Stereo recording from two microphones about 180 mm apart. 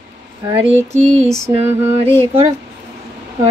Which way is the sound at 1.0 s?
40° right (ahead or behind).